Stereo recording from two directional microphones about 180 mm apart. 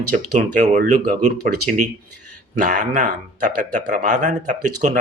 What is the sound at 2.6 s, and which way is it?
Speech, 45° right (ahead or behind).